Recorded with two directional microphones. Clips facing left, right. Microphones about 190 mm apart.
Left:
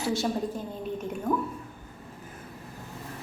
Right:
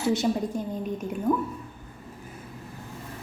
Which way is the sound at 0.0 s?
20° right (ahead or behind).